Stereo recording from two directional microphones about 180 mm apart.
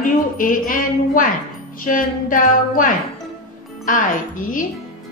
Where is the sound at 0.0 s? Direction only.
50° left (ahead or behind).